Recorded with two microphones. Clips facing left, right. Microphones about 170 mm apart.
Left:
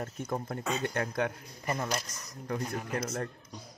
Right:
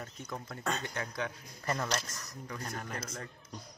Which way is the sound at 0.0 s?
50° left (ahead or behind).